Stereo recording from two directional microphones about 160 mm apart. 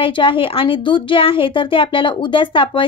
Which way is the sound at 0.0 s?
35° left (ahead or behind).